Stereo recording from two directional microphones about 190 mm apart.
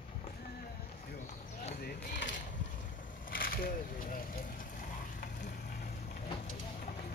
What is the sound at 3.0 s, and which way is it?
Vehicle, 50° left (ahead or behind).